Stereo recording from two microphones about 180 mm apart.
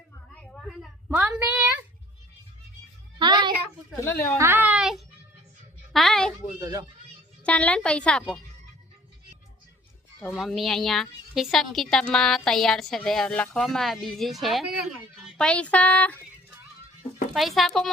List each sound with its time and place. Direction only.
0.5 s a sound: centre (ahead or behind)
3.2 s child singing: 25° right (ahead or behind)
4.0 s speech: 15° left (ahead or behind)
4.4 s a sound: 10° right (ahead or behind)
6.6 s speech: 20° right (ahead or behind)
7.4 s a woman's voice: 5° left (ahead or behind)
10.2 s a woman's voice: centre (ahead or behind)
17.3 s a woman's voice: centre (ahead or behind)